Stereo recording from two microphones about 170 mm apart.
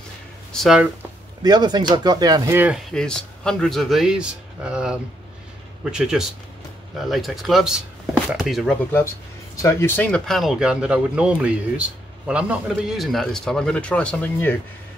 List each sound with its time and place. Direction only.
0.5 s speech: centre (ahead or behind)
1.4 s speech: 25° right (ahead or behind)
2.9 s speech: 5° left (ahead or behind)
9.6 s speech: 15° left (ahead or behind)